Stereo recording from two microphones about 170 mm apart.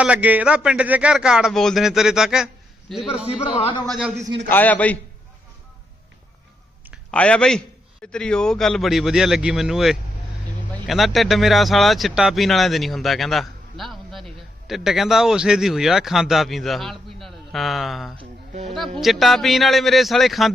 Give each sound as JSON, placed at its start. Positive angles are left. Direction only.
{"t": 0.0, "sound": "a man's voice", "side_deg": -10}
{"t": 3.6, "sound": "speech", "side_deg": 30}
{"t": 3.8, "sound": "speech", "side_deg": 0}
{"t": 4.4, "sound": "a man's voice", "side_deg": 10}
{"t": 7.1, "sound": "a man's voice", "side_deg": 5}